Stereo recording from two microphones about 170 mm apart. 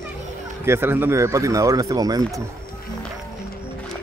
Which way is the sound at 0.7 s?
15° right (ahead or behind).